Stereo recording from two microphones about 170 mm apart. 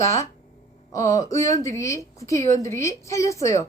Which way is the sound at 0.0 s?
20° left (ahead or behind).